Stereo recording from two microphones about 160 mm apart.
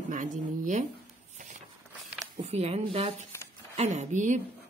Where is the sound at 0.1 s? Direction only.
55° right (ahead or behind).